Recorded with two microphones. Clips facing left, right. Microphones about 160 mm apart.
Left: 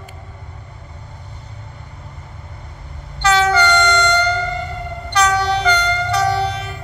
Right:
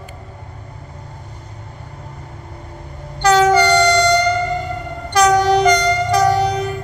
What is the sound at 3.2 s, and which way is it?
Train, 40° right (ahead or behind).